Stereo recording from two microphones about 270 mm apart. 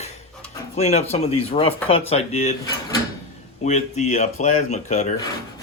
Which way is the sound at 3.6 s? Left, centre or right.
Left.